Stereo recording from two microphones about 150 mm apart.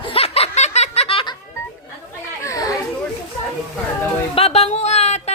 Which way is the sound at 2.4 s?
20° left (ahead or behind).